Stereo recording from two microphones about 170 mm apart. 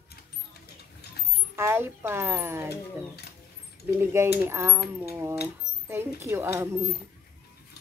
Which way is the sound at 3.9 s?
15° right (ahead or behind).